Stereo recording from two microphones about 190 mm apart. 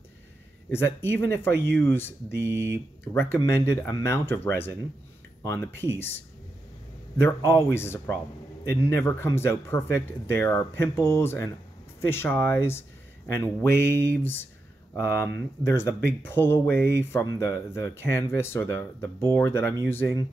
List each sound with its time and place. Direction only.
0.7 s speech: 10° left (ahead or behind)
16.6 s speech: 65° right (ahead or behind)
17.0 s speech: 15° left (ahead or behind)